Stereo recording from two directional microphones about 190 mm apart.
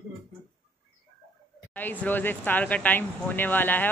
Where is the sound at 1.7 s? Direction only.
10° left (ahead or behind).